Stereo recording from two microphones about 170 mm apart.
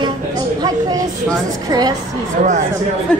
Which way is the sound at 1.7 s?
25° right (ahead or behind).